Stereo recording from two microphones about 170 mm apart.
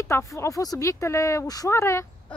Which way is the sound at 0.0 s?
15° left (ahead or behind).